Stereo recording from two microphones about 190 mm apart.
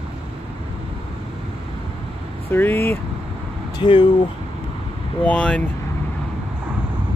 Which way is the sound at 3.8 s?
25° left (ahead or behind).